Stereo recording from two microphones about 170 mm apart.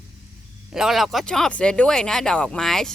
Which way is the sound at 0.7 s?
Centre (ahead or behind).